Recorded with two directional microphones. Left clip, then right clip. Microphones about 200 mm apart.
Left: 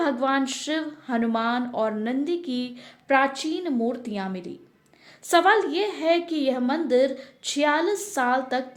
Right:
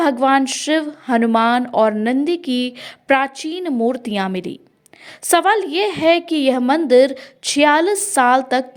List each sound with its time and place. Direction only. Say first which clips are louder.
0.0 s speech: right 9 dB; 30° right (ahead or behind)